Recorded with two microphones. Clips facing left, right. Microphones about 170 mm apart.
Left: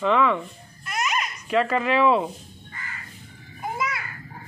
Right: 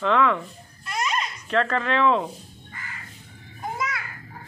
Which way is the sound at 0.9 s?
10° left (ahead or behind).